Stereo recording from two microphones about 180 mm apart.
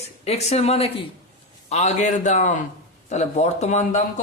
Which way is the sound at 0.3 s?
35° left (ahead or behind).